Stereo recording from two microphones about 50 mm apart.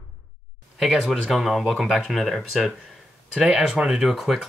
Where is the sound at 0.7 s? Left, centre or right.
Centre.